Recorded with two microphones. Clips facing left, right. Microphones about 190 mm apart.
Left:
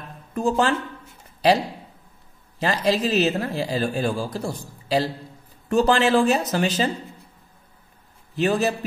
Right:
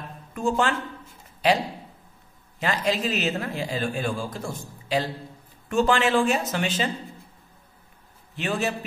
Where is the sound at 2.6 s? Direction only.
35° left (ahead or behind).